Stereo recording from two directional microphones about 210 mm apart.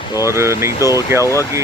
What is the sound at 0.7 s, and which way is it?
Speech, 15° left (ahead or behind).